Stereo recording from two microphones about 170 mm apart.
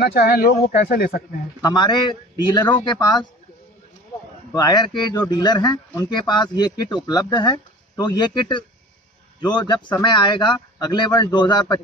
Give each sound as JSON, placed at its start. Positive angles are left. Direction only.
{"t": 0.0, "sound": "speech", "side_deg": 65}
{"t": 1.6, "sound": "a man's voice", "side_deg": 25}
{"t": 4.5, "sound": "a man's voice", "side_deg": 25}